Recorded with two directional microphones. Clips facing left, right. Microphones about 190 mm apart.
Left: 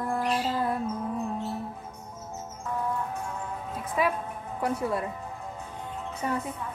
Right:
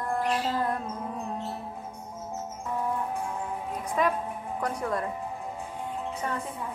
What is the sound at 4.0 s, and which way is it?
Speech, 5° left (ahead or behind).